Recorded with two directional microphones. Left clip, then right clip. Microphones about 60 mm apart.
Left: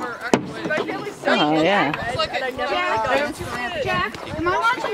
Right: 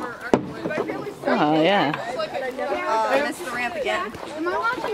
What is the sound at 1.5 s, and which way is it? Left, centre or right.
Speech, centre.